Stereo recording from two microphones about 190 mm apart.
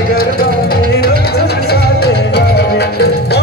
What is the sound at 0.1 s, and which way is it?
Music, 50° left (ahead or behind).